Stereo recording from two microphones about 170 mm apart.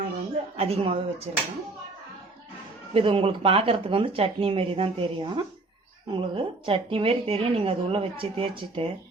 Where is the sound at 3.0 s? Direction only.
35° right (ahead or behind).